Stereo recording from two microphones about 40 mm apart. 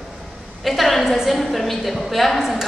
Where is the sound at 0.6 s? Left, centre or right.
Centre.